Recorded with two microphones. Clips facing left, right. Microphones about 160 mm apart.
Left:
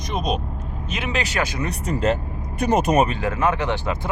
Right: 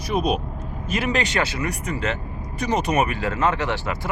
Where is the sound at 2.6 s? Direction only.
50° left (ahead or behind).